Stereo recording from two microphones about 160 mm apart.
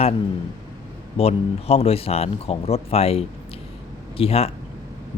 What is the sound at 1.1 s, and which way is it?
Speech, 40° left (ahead or behind).